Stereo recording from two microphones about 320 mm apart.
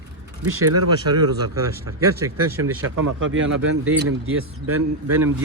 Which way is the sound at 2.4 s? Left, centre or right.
Right.